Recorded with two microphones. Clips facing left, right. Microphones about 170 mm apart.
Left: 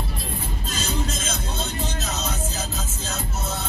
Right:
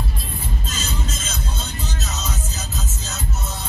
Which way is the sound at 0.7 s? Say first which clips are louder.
Left 5 dB; 55° left (ahead or behind).